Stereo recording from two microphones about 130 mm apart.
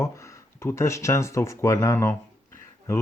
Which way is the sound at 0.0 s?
20° left (ahead or behind).